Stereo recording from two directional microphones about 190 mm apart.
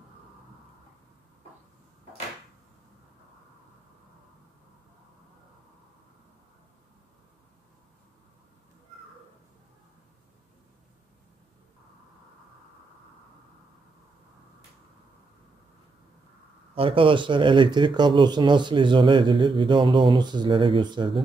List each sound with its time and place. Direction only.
16.7 s speech: 30° right (ahead or behind)